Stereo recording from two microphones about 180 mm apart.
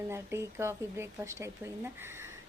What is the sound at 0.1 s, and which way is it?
Speech, 15° right (ahead or behind).